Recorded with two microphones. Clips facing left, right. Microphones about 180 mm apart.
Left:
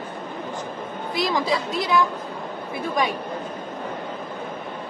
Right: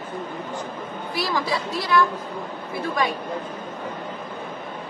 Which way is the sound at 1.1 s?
20° left (ahead or behind).